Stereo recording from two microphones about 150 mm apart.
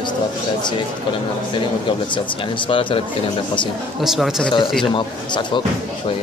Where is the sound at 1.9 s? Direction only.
35° left (ahead or behind).